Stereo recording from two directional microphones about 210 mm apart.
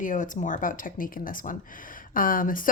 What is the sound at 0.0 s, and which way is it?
Speech, 40° left (ahead or behind).